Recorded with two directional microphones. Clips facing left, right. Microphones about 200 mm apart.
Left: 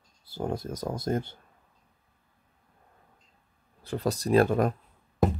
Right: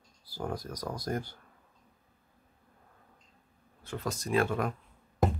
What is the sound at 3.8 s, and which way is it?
Speech, 35° left (ahead or behind).